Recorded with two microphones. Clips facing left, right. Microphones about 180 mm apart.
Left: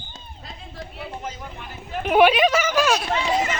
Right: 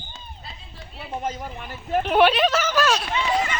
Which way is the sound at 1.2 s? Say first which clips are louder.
Right 10 dB; 50° right (ahead or behind).